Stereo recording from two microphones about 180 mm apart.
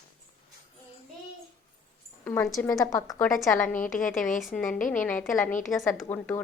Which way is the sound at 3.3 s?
5° left (ahead or behind).